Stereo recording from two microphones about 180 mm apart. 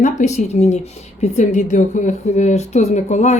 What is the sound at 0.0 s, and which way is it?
A woman's voice, 40° left (ahead or behind).